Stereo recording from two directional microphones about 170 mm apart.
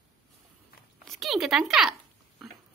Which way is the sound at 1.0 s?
Centre (ahead or behind).